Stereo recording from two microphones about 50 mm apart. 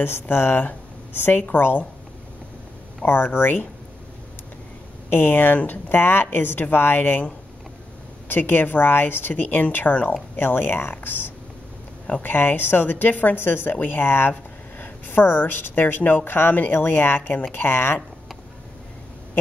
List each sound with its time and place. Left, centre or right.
0.0 s a woman's voice: left
3.1 s speech: left
5.1 s a woman's voice: left
8.3 s a woman's voice: left